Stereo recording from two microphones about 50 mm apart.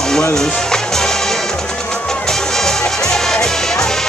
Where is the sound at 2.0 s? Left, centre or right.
Centre.